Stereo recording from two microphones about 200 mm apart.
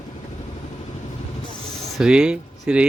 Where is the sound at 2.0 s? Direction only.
5° right (ahead or behind).